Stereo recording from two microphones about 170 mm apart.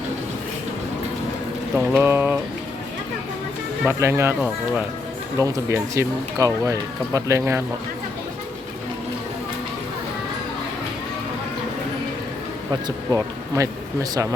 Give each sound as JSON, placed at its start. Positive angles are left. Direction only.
{"t": 1.7, "sound": "speech", "side_deg": -15}
{"t": 3.8, "sound": "speech", "side_deg": -15}
{"t": 13.1, "sound": "speech", "side_deg": -20}